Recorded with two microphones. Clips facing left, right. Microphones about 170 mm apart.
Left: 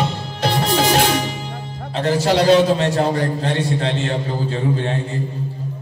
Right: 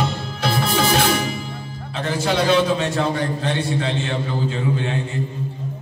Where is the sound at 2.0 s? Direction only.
35° left (ahead or behind).